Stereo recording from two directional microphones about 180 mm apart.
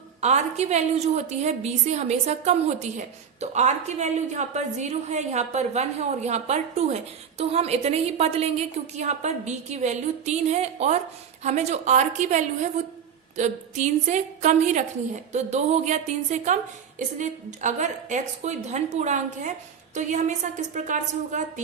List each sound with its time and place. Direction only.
0.2 s a woman's voice: 40° right (ahead or behind)